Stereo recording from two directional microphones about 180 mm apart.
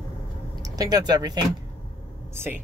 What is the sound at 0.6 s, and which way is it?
Speech, 20° right (ahead or behind).